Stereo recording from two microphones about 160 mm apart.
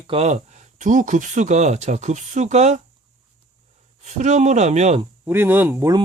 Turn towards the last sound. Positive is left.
turn(degrees=-15)  # may be behind; listen again after turning